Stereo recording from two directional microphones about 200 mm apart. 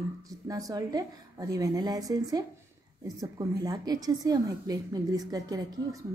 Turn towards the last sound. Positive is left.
turn(degrees=-20)  # may be behind; listen again after turning